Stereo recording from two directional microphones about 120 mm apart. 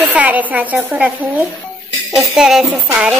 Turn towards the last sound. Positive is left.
turn(degrees=-10)  # may be behind; listen again after turning